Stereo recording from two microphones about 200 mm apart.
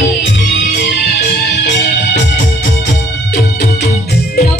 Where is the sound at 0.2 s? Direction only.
60° left (ahead or behind).